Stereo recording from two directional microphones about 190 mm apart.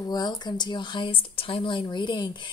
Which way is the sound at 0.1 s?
20° left (ahead or behind).